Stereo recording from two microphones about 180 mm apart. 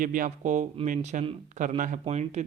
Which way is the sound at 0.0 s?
50° right (ahead or behind).